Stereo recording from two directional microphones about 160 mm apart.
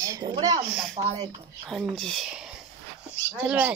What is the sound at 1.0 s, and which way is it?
Speech, 45° right (ahead or behind).